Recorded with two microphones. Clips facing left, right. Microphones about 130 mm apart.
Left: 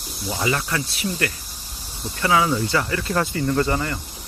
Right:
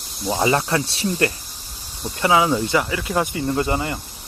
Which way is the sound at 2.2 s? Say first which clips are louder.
Right 2 dB; 20° right (ahead or behind).